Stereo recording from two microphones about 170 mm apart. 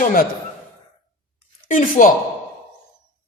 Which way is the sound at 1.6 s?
50° left (ahead or behind).